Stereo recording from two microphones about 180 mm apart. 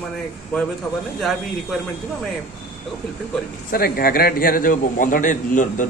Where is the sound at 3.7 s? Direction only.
55° left (ahead or behind).